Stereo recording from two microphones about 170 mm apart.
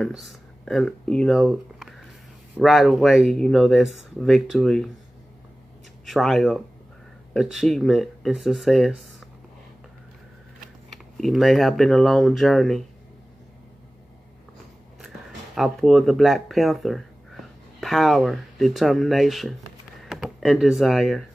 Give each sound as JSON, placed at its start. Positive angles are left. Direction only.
{"t": 0.0, "sound": "speech", "side_deg": 0}
{"t": 6.0, "sound": "speech", "side_deg": 0}
{"t": 11.1, "sound": "speech", "side_deg": 0}
{"t": 15.0, "sound": "speech", "side_deg": 0}